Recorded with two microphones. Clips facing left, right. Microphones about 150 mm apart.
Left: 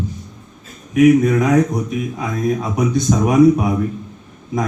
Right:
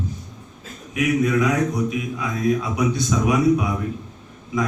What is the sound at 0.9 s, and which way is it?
Speech, 45° left (ahead or behind).